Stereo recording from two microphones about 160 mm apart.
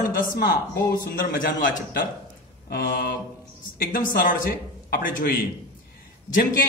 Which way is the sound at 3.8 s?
60° left (ahead or behind).